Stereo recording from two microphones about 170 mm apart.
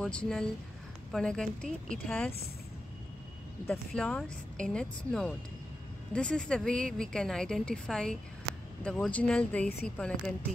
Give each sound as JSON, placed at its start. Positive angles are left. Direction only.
{"t": 0.0, "sound": "a woman's voice", "side_deg": 5}
{"t": 3.6, "sound": "a woman's voice", "side_deg": 10}